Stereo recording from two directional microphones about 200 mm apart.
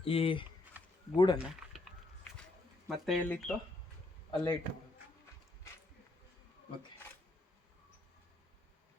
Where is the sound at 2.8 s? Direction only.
Centre (ahead or behind).